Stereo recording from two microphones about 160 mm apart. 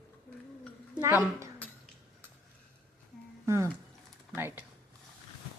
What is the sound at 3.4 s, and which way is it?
A woman's voice, 20° right (ahead or behind).